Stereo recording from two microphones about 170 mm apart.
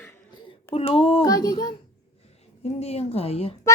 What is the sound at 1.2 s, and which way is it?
Speech, 20° left (ahead or behind).